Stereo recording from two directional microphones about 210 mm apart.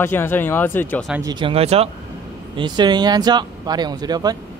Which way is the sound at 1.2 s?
25° right (ahead or behind).